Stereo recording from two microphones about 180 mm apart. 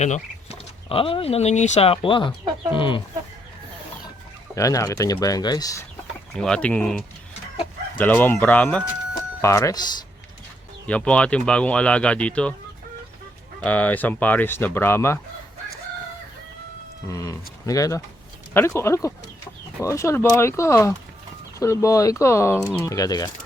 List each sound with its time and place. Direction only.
0.9 s speech: 30° left (ahead or behind)
4.5 s speech: 15° left (ahead or behind)
6.3 s speech: 5° left (ahead or behind)
7.9 s speech: 10° left (ahead or behind)
10.8 s speech: 5° left (ahead or behind)
13.6 s speech: 10° left (ahead or behind)
17.1 s speech: 20° left (ahead or behind)